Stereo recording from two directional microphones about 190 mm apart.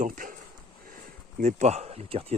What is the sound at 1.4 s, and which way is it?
Speech, 35° right (ahead or behind).